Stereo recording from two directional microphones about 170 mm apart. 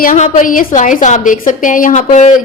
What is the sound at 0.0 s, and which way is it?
A woman's voice, 50° left (ahead or behind).